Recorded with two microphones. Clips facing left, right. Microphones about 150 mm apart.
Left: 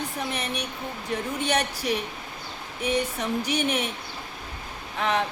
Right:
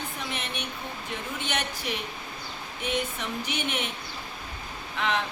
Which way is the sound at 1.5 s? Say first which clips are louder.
Left 6 dB; 35° left (ahead or behind).